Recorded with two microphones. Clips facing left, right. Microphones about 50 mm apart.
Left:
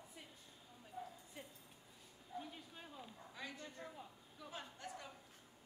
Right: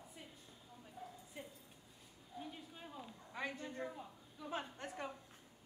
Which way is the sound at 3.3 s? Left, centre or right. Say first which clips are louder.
Right 8 dB; right.